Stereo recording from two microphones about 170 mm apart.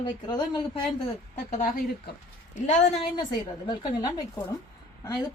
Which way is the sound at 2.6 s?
45° left (ahead or behind).